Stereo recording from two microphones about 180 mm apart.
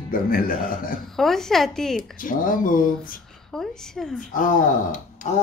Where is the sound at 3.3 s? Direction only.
Centre (ahead or behind).